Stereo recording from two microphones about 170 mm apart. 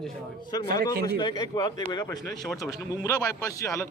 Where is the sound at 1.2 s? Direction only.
25° left (ahead or behind).